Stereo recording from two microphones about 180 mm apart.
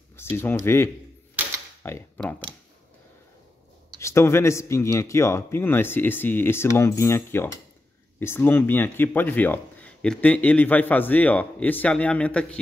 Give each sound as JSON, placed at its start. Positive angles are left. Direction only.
{"t": 0.1, "sound": "speech", "side_deg": 15}
{"t": 4.0, "sound": "speech", "side_deg": 15}